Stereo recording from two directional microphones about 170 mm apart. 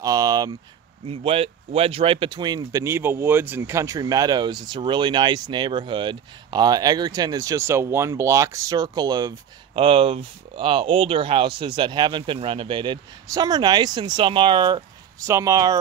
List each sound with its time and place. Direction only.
0.0 s speech: 20° right (ahead or behind)
1.0 s speech: 35° right (ahead or behind)